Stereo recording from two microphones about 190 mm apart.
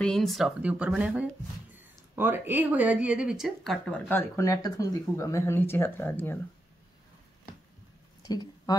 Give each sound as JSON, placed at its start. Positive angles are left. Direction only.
{"t": 0.0, "sound": "speech", "side_deg": 0}
{"t": 4.1, "sound": "speech", "side_deg": 15}
{"t": 8.3, "sound": "a sound", "side_deg": 20}